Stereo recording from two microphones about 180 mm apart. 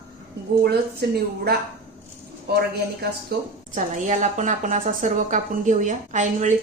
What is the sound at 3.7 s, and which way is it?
A woman's voice, 45° right (ahead or behind).